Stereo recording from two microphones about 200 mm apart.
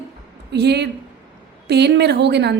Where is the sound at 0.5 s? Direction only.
55° right (ahead or behind).